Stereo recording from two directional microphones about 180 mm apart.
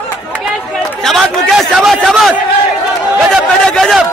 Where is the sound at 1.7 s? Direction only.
Centre (ahead or behind).